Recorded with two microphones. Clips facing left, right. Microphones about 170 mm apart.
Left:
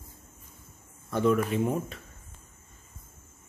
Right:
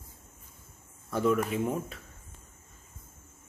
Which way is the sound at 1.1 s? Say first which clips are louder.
Left 2 dB; 5° right (ahead or behind).